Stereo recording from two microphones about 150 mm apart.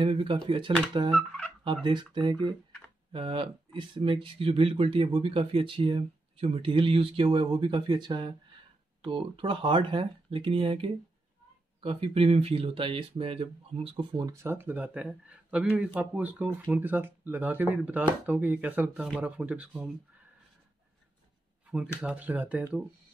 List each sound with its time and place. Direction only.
0.0 s speech: 35° right (ahead or behind)
1.1 s a sound: 5° left (ahead or behind)
1.6 s speech: 30° right (ahead or behind); by 19.9 s 10° right (ahead or behind)
22.0 s speech: 10° right (ahead or behind)